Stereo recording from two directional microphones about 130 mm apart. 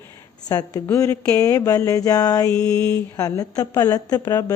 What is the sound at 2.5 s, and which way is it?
Mantra, 5° left (ahead or behind).